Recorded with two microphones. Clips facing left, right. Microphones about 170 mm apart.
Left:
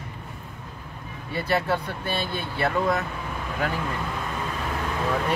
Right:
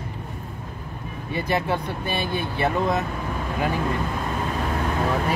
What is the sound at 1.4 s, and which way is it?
Speech, 15° right (ahead or behind).